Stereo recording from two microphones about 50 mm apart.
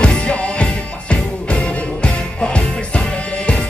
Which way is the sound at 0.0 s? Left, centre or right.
Left.